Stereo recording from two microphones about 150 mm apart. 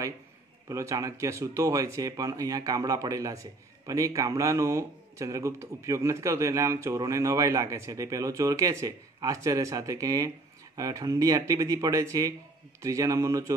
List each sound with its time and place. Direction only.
0.7 s a man's voice: 20° right (ahead or behind)